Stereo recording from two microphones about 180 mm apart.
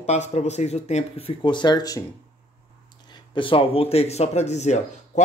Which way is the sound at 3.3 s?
30° left (ahead or behind).